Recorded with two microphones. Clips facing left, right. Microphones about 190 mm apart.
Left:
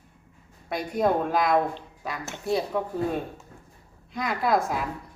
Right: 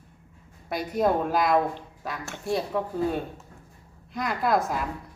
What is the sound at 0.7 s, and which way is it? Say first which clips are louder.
A woman's voice: even; centre (ahead or behind).